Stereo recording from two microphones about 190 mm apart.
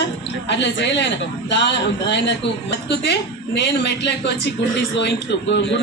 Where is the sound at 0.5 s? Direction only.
70° left (ahead or behind).